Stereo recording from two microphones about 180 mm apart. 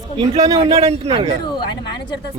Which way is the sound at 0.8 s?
35° right (ahead or behind).